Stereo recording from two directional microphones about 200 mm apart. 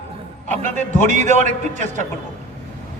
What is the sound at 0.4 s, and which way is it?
A man's voice, 40° right (ahead or behind).